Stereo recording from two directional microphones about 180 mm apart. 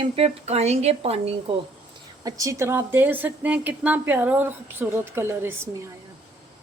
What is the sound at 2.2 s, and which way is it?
A woman's voice, 20° right (ahead or behind).